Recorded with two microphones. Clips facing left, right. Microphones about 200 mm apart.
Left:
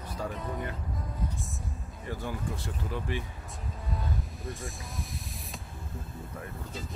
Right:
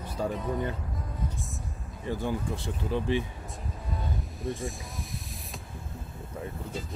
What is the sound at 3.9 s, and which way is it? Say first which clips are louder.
Vehicle: even; centre (ahead or behind).